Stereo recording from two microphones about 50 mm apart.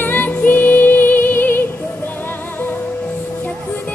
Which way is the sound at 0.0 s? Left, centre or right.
Left.